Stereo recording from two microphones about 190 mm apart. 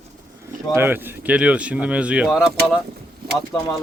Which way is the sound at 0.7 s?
10° right (ahead or behind).